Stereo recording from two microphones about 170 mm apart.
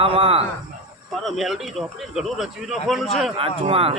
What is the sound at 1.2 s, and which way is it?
A man's voice, centre (ahead or behind).